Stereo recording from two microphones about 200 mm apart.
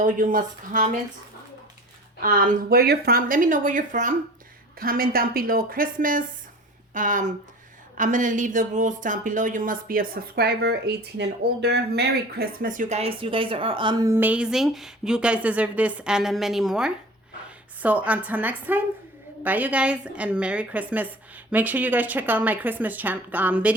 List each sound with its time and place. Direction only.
0.0 s speech: 40° right (ahead or behind)
2.2 s speech: 45° right (ahead or behind); by 14.1 s 25° right (ahead or behind)
14.1 s a woman's voice: 10° right (ahead or behind)